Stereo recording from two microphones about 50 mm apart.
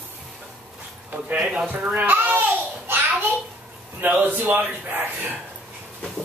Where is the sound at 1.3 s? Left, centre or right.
Right.